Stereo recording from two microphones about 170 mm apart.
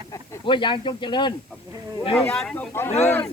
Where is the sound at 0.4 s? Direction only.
30° left (ahead or behind).